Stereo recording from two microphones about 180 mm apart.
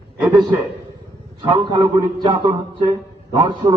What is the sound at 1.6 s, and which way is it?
Speech, 30° right (ahead or behind).